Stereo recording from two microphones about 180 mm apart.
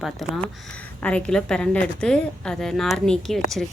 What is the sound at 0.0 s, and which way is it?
A woman's voice, 5° left (ahead or behind).